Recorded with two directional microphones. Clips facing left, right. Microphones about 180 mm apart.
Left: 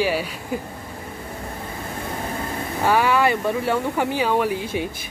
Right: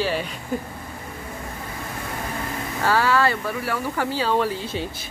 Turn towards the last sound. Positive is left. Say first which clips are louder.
# left 2 dB
turn(degrees=15)  # may be behind; listen again after turning